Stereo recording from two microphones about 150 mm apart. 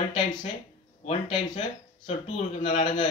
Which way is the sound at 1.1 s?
35° left (ahead or behind).